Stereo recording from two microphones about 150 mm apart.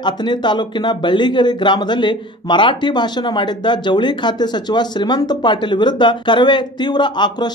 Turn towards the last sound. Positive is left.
turn(degrees=30)  # may be behind; listen again after turning